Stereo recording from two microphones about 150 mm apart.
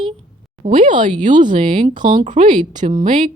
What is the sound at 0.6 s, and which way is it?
Speech, 60° right (ahead or behind).